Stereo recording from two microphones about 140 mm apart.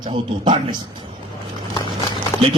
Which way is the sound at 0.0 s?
35° right (ahead or behind).